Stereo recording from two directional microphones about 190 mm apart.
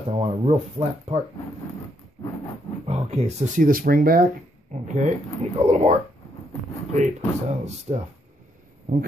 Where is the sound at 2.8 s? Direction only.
35° right (ahead or behind).